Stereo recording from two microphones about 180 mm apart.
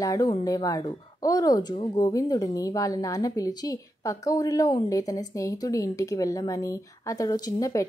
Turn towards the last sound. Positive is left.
turn(degrees=20)  # may be behind; listen again after turning